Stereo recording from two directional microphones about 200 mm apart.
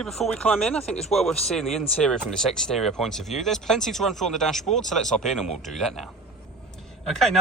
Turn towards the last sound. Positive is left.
turn(degrees=0)  # may be behind; listen again after turning